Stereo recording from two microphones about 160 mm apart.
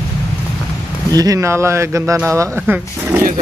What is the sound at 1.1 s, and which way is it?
Speech, 20° right (ahead or behind).